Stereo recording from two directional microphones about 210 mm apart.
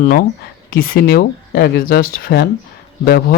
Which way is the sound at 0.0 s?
40° left (ahead or behind).